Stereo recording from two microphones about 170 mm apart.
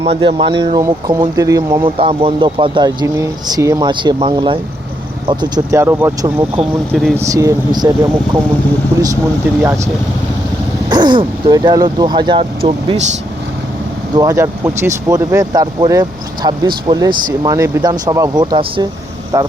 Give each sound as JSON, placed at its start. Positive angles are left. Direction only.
{"t": 0.0, "sound": "speech", "side_deg": -35}
{"t": 6.9, "sound": "speech", "side_deg": 0}
{"t": 7.2, "sound": "speech", "side_deg": -20}
{"t": 9.6, "sound": "speech", "side_deg": -15}
{"t": 14.2, "sound": "speech", "side_deg": -20}